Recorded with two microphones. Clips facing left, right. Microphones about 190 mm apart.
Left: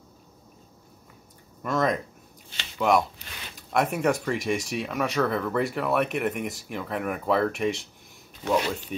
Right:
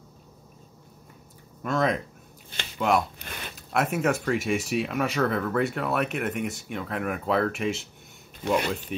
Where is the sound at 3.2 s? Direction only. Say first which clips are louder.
Right 4 dB; 55° right (ahead or behind).